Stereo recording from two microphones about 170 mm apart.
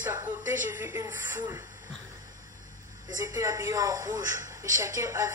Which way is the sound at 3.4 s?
20° right (ahead or behind).